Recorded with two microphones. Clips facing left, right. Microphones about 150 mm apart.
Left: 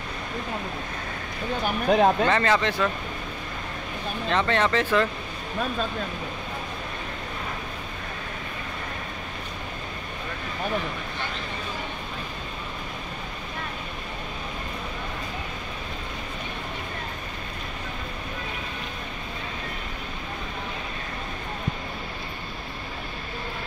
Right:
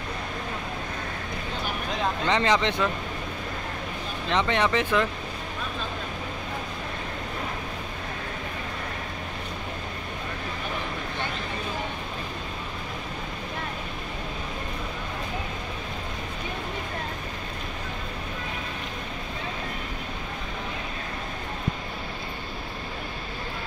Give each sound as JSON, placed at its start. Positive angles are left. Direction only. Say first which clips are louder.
{"t": 1.9, "sound": "speech", "louder": "left 11 dB", "side_deg": 55}
{"t": 2.2, "sound": "speech", "louder": "left 1 dB", "side_deg": -15}
{"t": 4.3, "sound": "speech", "louder": "left 1 dB", "side_deg": -15}